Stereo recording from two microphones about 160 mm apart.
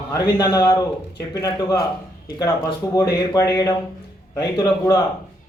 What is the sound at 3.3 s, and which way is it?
A man's voice, 25° left (ahead or behind).